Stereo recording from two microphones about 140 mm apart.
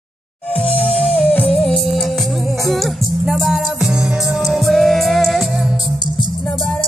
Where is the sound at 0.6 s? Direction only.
10° left (ahead or behind).